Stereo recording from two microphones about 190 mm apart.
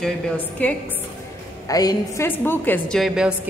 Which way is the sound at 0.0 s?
10° left (ahead or behind).